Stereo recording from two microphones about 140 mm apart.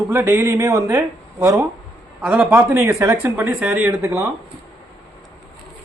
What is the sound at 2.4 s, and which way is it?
Speech, 20° right (ahead or behind).